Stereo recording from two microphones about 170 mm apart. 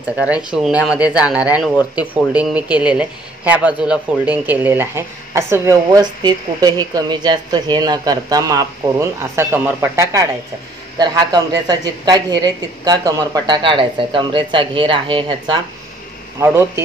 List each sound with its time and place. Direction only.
0.2 s a man's voice: 5° right (ahead or behind); by 15.6 s 30° right (ahead or behind)
16.3 s speech: 15° right (ahead or behind)